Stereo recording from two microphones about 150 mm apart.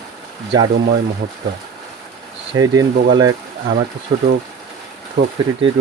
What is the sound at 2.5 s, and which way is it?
Speech, 25° right (ahead or behind).